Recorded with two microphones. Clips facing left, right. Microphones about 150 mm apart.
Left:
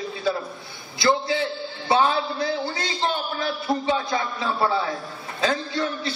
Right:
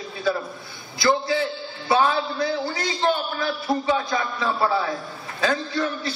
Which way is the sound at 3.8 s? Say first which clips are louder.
Right 1 dB; 25° left (ahead or behind).